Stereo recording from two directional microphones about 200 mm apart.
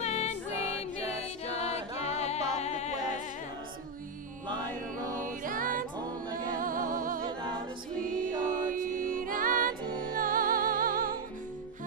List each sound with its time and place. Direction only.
0.0 s music: 35° left (ahead or behind)
5.1 s music: 40° right (ahead or behind)
8.4 s music: 40° right (ahead or behind)